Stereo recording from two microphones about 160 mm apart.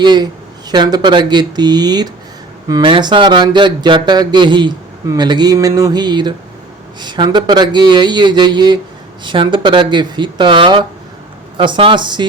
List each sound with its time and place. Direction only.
0.0 s speech: 25° right (ahead or behind)